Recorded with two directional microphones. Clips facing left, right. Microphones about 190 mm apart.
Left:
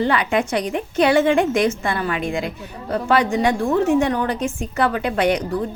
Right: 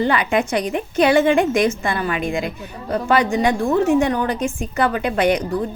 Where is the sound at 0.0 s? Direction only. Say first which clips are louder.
Right 1 dB; 15° right (ahead or behind).